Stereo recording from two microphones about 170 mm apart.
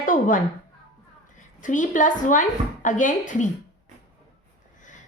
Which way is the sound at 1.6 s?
50° left (ahead or behind).